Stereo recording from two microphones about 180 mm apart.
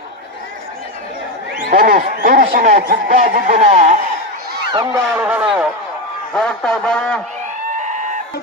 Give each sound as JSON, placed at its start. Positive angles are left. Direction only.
{"t": 1.7, "sound": "speech", "side_deg": -55}
{"t": 5.0, "sound": "speech", "side_deg": -5}
{"t": 6.3, "sound": "speech", "side_deg": 5}
{"t": 7.8, "sound": "sheep", "side_deg": -45}